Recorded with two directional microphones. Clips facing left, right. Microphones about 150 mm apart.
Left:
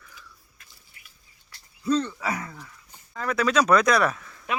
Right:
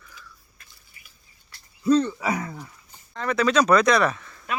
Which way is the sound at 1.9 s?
15° right (ahead or behind).